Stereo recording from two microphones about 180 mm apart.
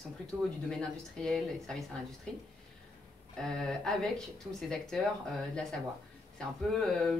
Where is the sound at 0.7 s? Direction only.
5° left (ahead or behind).